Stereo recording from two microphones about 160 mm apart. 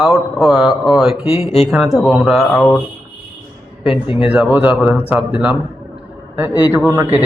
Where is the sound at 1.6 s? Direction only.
5° right (ahead or behind).